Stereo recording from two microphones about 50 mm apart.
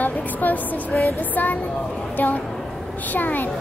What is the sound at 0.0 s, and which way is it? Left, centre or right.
Music, left.